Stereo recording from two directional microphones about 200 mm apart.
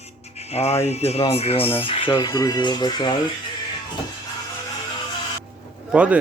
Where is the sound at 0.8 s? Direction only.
30° left (ahead or behind).